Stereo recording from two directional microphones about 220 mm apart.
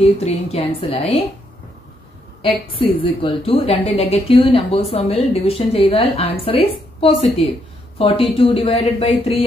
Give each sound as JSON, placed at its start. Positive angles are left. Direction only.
{"t": 0.2, "sound": "a woman's voice", "side_deg": 25}
{"t": 2.4, "sound": "a woman's voice", "side_deg": 25}